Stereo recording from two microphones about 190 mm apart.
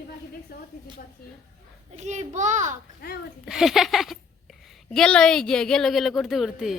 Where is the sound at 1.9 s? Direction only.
40° right (ahead or behind).